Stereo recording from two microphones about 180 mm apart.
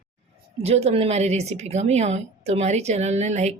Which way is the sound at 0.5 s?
35° right (ahead or behind).